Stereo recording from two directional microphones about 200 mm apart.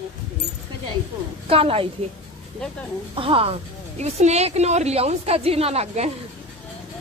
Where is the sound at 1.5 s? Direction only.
30° right (ahead or behind).